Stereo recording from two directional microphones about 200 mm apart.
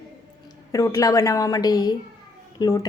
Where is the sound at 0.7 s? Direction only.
15° left (ahead or behind).